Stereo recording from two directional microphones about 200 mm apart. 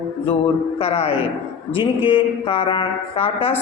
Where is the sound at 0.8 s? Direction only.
30° left (ahead or behind).